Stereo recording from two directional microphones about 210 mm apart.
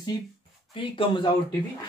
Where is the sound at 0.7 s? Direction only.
25° left (ahead or behind).